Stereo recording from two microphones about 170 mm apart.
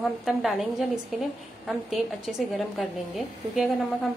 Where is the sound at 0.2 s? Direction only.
Centre (ahead or behind).